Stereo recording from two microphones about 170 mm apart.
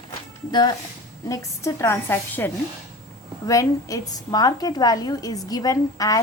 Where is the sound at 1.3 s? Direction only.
15° left (ahead or behind).